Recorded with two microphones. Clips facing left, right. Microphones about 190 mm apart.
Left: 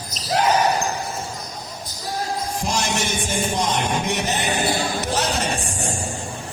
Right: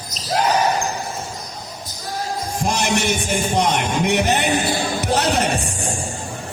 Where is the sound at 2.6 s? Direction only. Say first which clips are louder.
Right 5 dB; 60° right (ahead or behind).